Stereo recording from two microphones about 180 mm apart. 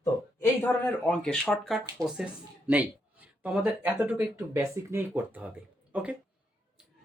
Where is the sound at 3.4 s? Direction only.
10° right (ahead or behind).